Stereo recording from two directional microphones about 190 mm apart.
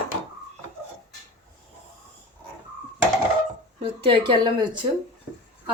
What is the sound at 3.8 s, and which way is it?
Speech, 25° right (ahead or behind).